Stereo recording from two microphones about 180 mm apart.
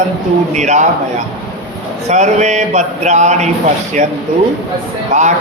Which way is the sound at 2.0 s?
40° right (ahead or behind).